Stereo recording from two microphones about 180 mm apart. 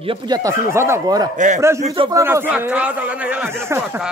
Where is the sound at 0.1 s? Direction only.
20° right (ahead or behind).